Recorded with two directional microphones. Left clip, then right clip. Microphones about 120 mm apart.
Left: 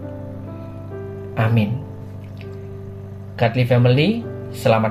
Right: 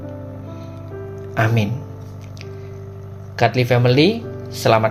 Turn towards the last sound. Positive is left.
turn(degrees=-40)  # may be behind; listen again after turning